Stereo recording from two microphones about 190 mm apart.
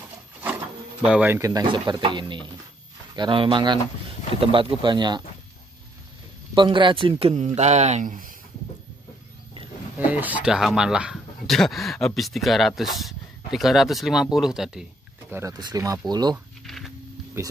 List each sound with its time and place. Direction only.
1.0 s speech: 5° right (ahead or behind); by 5.2 s 25° right (ahead or behind)
6.5 s speech: 25° right (ahead or behind); by 8.3 s 45° right (ahead or behind)
9.9 s speech: 10° right (ahead or behind)
15.3 s speech: 20° right (ahead or behind)
16.6 s a sound: centre (ahead or behind)
17.4 s speech: 15° right (ahead or behind)